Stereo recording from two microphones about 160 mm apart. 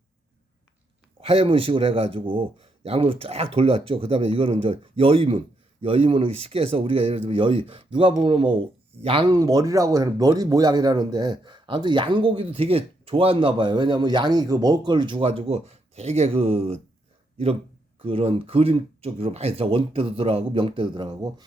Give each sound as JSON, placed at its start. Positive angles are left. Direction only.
{"t": 1.2, "sound": "speech", "side_deg": -35}